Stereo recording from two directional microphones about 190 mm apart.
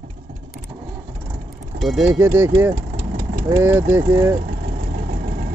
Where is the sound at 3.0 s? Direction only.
50° right (ahead or behind).